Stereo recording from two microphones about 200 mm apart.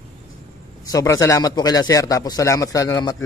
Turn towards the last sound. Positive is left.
turn(degrees=20)  # may be behind; listen again after turning